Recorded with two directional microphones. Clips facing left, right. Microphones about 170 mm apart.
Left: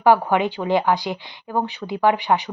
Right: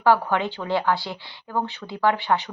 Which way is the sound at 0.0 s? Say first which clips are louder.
Left 3 dB; 15° left (ahead or behind).